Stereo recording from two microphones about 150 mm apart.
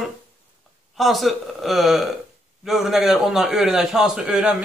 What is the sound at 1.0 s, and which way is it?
A man's voice, centre (ahead or behind).